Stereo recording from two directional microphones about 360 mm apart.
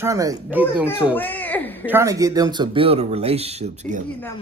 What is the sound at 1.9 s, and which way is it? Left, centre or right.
Speech, centre.